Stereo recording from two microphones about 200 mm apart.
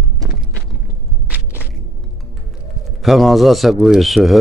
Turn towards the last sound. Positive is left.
turn(degrees=0)  # may be behind; listen again after turning